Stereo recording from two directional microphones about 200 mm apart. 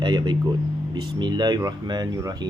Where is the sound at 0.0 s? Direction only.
20° right (ahead or behind).